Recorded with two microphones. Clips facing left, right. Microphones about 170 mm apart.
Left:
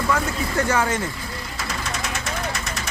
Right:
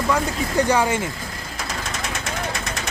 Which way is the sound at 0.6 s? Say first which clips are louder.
Right 3 dB; 15° right (ahead or behind).